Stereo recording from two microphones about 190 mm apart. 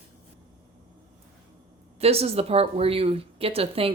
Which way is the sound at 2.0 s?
30° right (ahead or behind).